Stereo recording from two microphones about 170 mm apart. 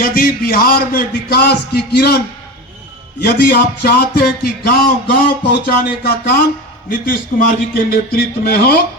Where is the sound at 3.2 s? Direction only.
65° left (ahead or behind).